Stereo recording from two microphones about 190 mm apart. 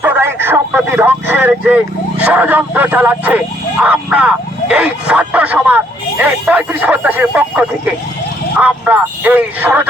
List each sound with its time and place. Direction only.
0.0 s speech: 10° right (ahead or behind)